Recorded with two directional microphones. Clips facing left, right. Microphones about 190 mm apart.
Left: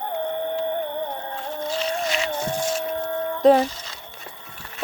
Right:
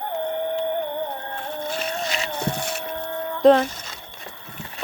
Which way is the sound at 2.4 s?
65° right (ahead or behind).